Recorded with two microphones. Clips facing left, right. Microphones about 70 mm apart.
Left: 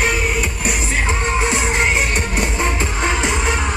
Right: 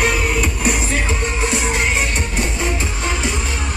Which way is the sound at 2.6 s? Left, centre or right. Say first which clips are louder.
Left 2 dB; left.